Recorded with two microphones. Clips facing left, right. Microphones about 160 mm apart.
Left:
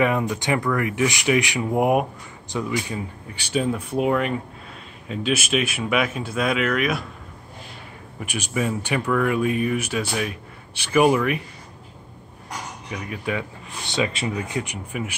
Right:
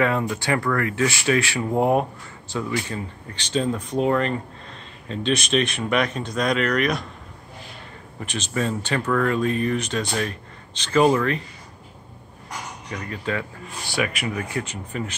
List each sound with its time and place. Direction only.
0.0 s speech: 15° left (ahead or behind)
8.2 s speech: 10° left (ahead or behind)
12.9 s speech: 10° left (ahead or behind)